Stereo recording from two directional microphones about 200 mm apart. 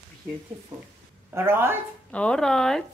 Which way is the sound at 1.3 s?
10° right (ahead or behind).